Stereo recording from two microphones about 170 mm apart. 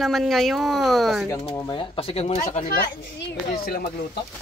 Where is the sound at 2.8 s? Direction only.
65° left (ahead or behind).